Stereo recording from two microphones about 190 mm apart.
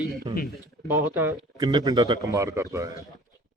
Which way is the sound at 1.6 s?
20° right (ahead or behind).